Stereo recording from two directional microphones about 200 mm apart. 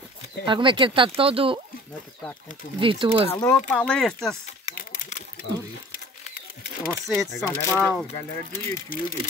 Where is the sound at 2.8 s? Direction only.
25° right (ahead or behind).